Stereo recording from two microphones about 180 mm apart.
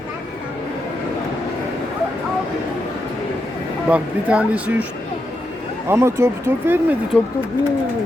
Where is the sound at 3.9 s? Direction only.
5° right (ahead or behind).